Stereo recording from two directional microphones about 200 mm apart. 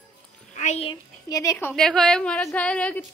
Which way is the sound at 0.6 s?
35° left (ahead or behind).